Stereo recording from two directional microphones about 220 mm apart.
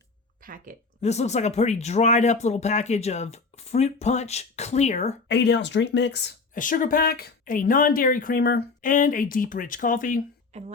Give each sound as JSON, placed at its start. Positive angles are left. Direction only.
{"t": 0.4, "sound": "speech", "side_deg": -40}
{"t": 1.0, "sound": "speech", "side_deg": 30}
{"t": 5.3, "sound": "speech", "side_deg": 50}
{"t": 10.5, "sound": "speech", "side_deg": -30}